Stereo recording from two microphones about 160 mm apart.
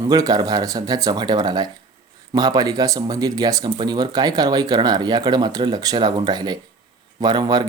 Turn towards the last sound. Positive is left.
turn(degrees=-25)  # may be behind; listen again after turning